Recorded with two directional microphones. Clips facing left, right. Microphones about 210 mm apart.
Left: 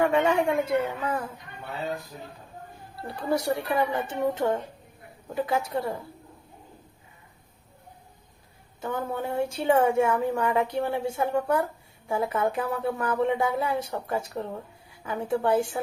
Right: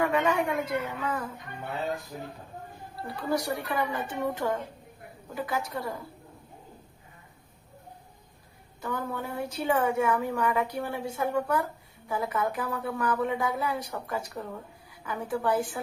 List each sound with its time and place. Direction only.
0.0 s a woman's voice: 25° left (ahead or behind)
3.2 s a woman's voice: 25° left (ahead or behind)
8.8 s a woman's voice: 25° left (ahead or behind)